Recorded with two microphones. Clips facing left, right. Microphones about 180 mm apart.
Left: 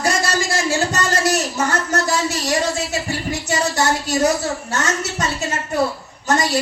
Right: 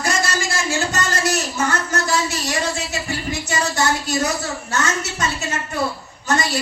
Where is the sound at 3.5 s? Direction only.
40° left (ahead or behind).